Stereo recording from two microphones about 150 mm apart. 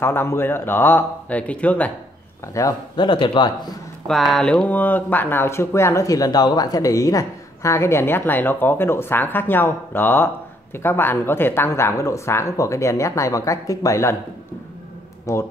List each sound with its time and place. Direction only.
0.0 s speech: 15° left (ahead or behind)
2.5 s speech: 25° left (ahead or behind)
4.1 s speech: centre (ahead or behind); by 14.1 s 20° left (ahead or behind)
15.3 s speech: 20° left (ahead or behind)